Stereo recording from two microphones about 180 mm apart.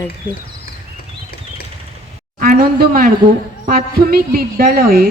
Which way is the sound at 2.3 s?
50° right (ahead or behind).